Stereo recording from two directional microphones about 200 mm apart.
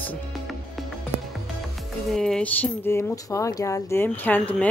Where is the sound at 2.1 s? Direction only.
5° left (ahead or behind).